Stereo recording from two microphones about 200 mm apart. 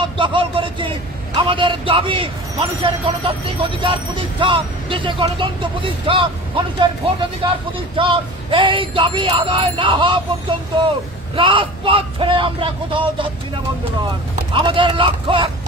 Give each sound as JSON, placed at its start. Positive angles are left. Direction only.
{"t": 0.0, "sound": "a man's voice", "side_deg": -25}
{"t": 7.9, "sound": "a man's voice", "side_deg": -25}
{"t": 11.3, "sound": "a man's voice", "side_deg": -25}
{"t": 14.5, "sound": "a man's voice", "side_deg": -25}